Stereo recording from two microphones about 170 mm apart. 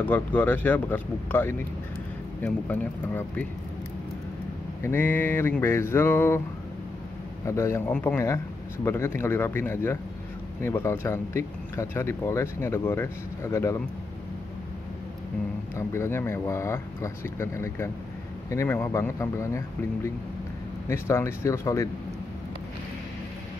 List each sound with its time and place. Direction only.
0.0 s speech: 10° left (ahead or behind)
4.8 s speech: 10° left (ahead or behind)
7.4 s speech: 15° left (ahead or behind)
15.7 s speech: 15° left (ahead or behind)